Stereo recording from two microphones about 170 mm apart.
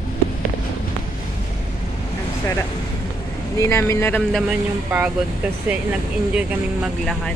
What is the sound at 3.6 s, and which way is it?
Speech, 15° left (ahead or behind).